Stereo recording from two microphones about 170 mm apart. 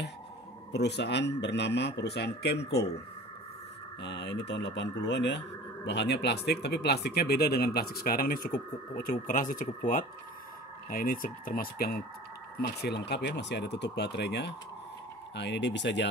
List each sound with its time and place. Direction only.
0.7 s speech: 80° left
4.0 s speech: 90° left; by 12.0 s 60° left (ahead or behind)
12.6 s speech: 80° left